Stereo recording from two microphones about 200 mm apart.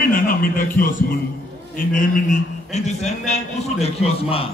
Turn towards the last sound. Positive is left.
turn(degrees=30)  # may be behind; listen again after turning